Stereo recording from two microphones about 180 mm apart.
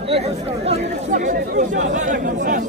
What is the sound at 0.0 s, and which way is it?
Chatter, 35° right (ahead or behind).